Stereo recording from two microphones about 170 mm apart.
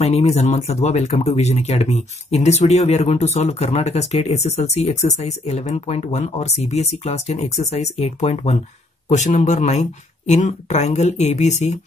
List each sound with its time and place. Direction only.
0.0 s speech: 40° left (ahead or behind)